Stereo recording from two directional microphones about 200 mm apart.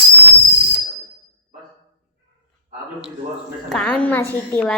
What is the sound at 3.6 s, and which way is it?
A woman's voice, 5° left (ahead or behind).